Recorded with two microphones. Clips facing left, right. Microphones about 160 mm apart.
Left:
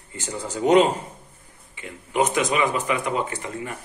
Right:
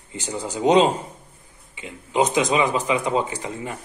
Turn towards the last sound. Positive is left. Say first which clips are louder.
# right 1 dB
turn(degrees=-20)  # may be behind; listen again after turning